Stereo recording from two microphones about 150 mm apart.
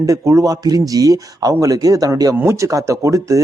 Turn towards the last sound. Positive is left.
turn(degrees=-20)  # may be behind; listen again after turning